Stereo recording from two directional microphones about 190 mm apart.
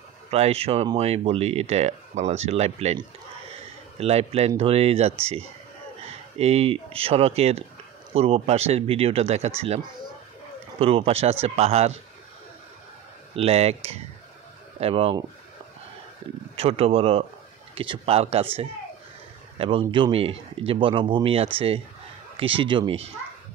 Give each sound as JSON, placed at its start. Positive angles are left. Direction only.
{"t": 0.3, "sound": "speech", "side_deg": -30}
{"t": 4.0, "sound": "speech", "side_deg": -30}
{"t": 10.8, "sound": "speech", "side_deg": -30}
{"t": 13.3, "sound": "speech", "side_deg": -35}
{"t": 16.5, "sound": "speech", "side_deg": -30}